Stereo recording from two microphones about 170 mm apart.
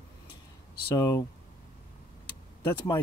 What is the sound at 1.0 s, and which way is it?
Speech, 20° left (ahead or behind).